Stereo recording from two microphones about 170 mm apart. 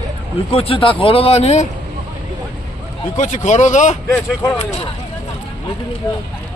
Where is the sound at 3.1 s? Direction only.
45° left (ahead or behind).